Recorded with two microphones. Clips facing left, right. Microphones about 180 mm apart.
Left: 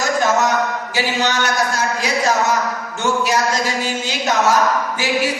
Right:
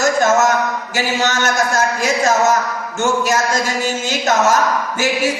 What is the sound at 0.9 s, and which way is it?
Speech, 45° right (ahead or behind).